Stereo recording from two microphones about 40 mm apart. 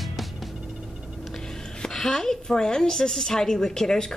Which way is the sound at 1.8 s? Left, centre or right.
Centre.